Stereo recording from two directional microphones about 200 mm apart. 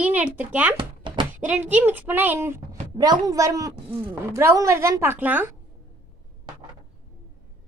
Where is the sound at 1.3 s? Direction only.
10° right (ahead or behind).